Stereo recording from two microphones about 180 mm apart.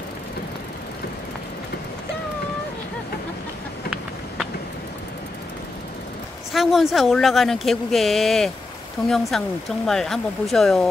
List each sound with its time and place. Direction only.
6.5 s speech: centre (ahead or behind)